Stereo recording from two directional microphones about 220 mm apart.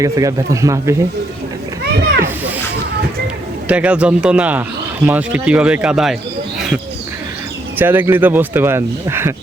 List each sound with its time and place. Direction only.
0.0 s speech: 15° right (ahead or behind)
2.2 s music: 10° right (ahead or behind)
3.7 s speech: 5° right (ahead or behind)
7.8 s speech: 10° right (ahead or behind)